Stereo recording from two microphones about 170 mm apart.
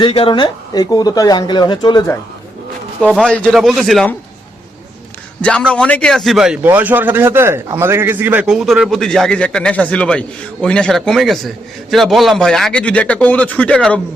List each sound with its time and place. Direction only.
0.0 s speech: 30° left (ahead or behind)
3.0 s a man's voice: 5° left (ahead or behind)
5.4 s a man's voice: 5° left (ahead or behind)